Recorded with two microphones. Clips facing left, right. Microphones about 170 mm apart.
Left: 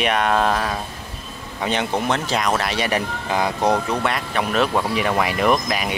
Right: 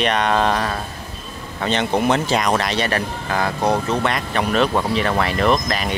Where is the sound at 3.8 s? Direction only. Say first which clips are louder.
Right 2 dB; 5° left (ahead or behind).